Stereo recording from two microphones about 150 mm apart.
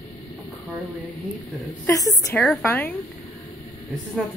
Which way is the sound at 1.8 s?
20° left (ahead or behind).